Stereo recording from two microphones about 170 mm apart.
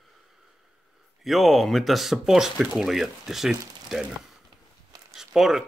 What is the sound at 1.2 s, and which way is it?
Speech, centre (ahead or behind).